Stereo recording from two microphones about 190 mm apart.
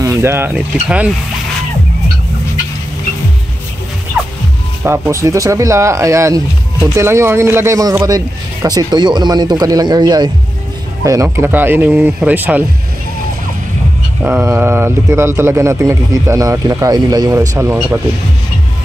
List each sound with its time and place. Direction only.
0.0 s speech: 15° right (ahead or behind)
4.8 s speech: 10° right (ahead or behind)
14.2 s speech: 10° right (ahead or behind)